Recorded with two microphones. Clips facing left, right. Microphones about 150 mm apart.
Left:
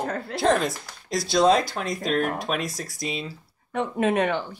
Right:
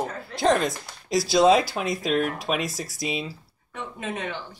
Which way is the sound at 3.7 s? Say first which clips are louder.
Left 10 dB; 65° left (ahead or behind).